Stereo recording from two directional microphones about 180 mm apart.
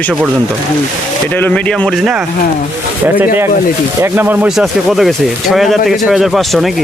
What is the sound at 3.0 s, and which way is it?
Speech, 10° right (ahead or behind).